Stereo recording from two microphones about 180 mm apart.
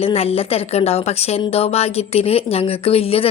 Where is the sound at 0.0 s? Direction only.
35° left (ahead or behind).